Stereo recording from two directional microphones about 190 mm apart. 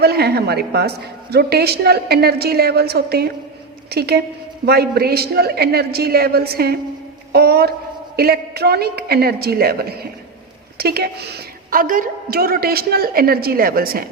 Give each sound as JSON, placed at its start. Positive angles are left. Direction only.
{"t": 0.0, "sound": "a woman's voice", "side_deg": -55}